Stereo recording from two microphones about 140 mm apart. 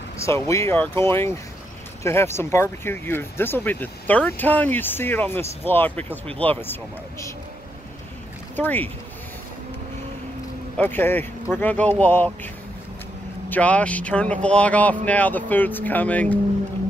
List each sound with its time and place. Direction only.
0.2 s speech: 20° left (ahead or behind)
8.5 s speech: 15° left (ahead or behind)
10.8 s speech: 15° left (ahead or behind)
13.5 s speech: 10° left (ahead or behind)